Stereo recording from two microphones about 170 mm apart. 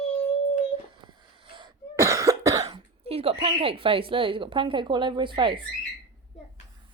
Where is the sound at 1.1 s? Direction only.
30° right (ahead or behind).